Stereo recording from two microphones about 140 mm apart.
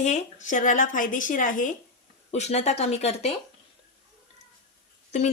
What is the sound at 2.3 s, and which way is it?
Speech, 55° left (ahead or behind).